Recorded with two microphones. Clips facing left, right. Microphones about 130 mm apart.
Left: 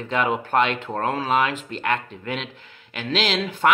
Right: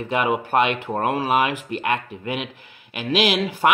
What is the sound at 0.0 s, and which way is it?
Speech, 10° right (ahead or behind).